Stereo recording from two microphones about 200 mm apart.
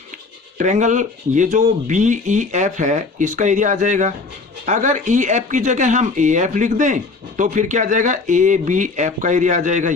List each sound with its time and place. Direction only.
0.6 s speech: 35° right (ahead or behind)